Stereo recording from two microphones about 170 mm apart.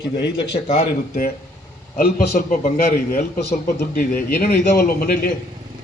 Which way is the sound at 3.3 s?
75° left (ahead or behind).